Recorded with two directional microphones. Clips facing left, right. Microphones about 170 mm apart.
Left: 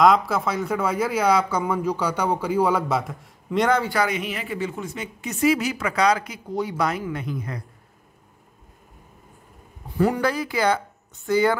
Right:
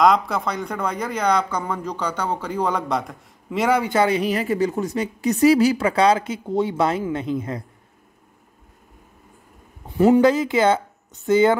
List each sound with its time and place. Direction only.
0.0 s speech: centre (ahead or behind)
3.9 s a woman's voice: 30° right (ahead or behind)
9.9 s a woman's voice: 20° right (ahead or behind)